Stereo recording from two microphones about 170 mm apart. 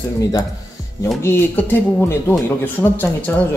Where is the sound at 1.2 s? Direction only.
10° left (ahead or behind).